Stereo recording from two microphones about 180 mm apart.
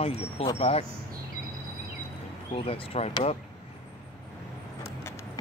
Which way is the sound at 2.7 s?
35° left (ahead or behind).